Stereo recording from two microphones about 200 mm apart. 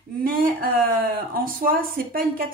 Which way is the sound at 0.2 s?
45° right (ahead or behind).